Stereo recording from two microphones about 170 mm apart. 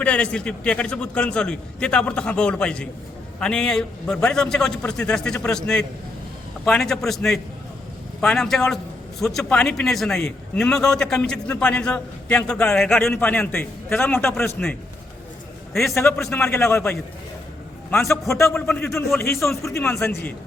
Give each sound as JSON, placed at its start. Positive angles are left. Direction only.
{"t": 0.0, "sound": "a man's voice", "side_deg": 5}
{"t": 18.3, "sound": "a man's voice", "side_deg": 15}